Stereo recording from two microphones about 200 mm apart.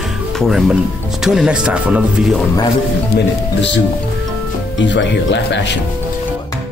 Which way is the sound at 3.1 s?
60° left (ahead or behind).